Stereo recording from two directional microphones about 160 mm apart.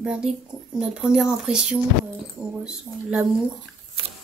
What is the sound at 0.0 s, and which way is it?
Speech, 5° right (ahead or behind).